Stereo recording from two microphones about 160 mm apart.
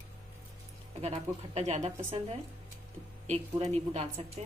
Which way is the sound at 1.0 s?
40° right (ahead or behind).